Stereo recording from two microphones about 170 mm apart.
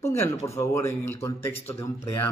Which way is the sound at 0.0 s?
15° left (ahead or behind).